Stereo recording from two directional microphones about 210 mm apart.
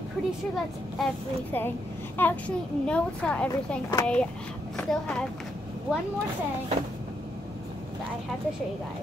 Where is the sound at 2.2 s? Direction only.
5° left (ahead or behind).